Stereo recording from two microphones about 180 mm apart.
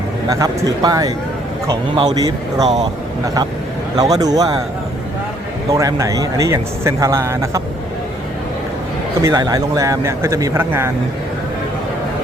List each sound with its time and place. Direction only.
0.3 s speech: 20° right (ahead or behind)
3.9 s speech: 20° right (ahead or behind)
5.7 s speech: 20° right (ahead or behind)
9.2 s speech: 20° right (ahead or behind)